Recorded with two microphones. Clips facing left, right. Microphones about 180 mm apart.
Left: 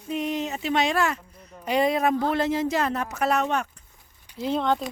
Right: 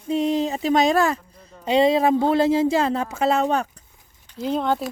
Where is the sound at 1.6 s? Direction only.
25° right (ahead or behind).